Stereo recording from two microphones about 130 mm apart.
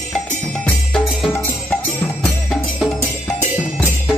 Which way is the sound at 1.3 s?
15° left (ahead or behind).